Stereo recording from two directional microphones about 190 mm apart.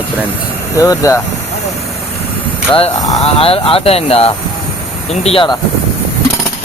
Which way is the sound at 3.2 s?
30° left (ahead or behind).